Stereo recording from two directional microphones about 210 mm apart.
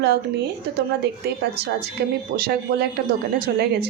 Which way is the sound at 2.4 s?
45° right (ahead or behind).